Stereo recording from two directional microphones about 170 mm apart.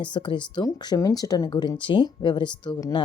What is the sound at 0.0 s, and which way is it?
Speech, 30° left (ahead or behind).